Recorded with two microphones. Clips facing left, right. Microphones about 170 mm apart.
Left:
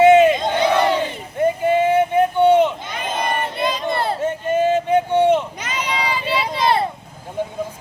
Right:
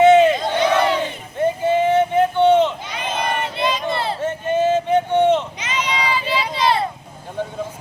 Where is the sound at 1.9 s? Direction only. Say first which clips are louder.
Even; 10° left (ahead or behind).